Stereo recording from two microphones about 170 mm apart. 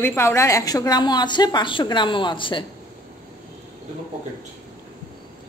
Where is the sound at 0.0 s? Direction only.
15° left (ahead or behind); by 2.6 s 30° left (ahead or behind).